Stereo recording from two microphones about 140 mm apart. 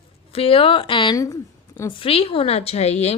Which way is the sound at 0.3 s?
40° left (ahead or behind).